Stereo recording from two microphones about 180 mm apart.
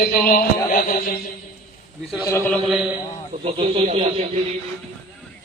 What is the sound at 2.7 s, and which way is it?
Speech, 5° right (ahead or behind).